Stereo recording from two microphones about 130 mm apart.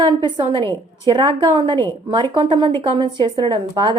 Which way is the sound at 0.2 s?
40° right (ahead or behind).